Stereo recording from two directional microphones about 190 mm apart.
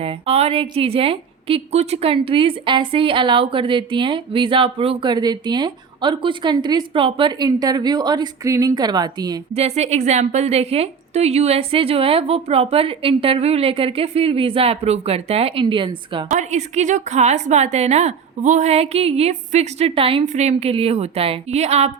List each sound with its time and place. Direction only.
0.0 s a woman's voice: 30° right (ahead or behind)
9.6 s a woman's voice: 35° right (ahead or behind)
16.3 s a woman's voice: 40° right (ahead or behind)